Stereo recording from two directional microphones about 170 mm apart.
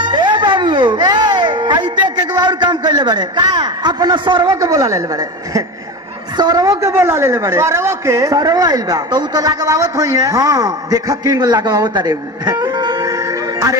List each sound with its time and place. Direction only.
0.0 s music: 25° right (ahead or behind)
6.3 s a woman's voice: 25° right (ahead or behind)